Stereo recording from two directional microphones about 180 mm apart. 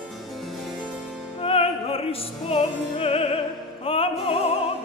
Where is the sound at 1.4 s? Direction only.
30° left (ahead or behind).